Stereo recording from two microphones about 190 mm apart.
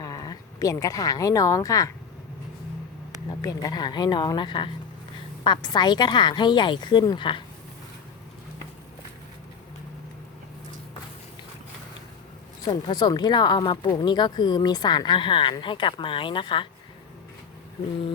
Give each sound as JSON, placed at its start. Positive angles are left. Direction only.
{"t": 0.0, "sound": "speech", "side_deg": 20}
{"t": 3.4, "sound": "speech", "side_deg": 20}
{"t": 12.6, "sound": "speech", "side_deg": 20}